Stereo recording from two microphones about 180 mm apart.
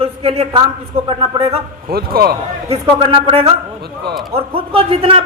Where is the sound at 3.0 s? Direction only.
30° right (ahead or behind).